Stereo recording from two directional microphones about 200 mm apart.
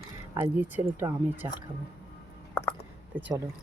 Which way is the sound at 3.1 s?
10° right (ahead or behind).